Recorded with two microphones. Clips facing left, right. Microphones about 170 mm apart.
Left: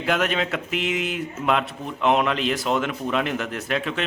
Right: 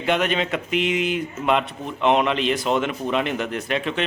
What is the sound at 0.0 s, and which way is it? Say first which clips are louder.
Speech: right 1 dB; centre (ahead or behind).